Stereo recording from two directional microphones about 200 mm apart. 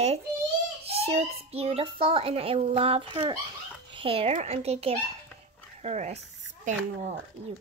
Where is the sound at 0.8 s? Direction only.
30° right (ahead or behind).